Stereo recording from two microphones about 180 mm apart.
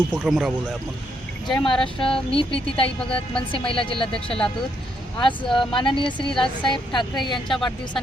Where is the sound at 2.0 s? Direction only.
30° left (ahead or behind).